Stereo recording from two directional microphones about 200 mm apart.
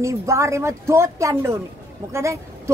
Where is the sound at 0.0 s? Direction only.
15° right (ahead or behind).